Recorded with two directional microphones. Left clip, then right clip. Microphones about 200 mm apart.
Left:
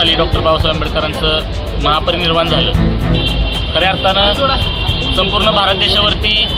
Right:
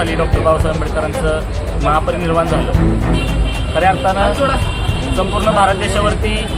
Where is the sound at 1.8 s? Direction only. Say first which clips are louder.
Left 2 dB; centre (ahead or behind).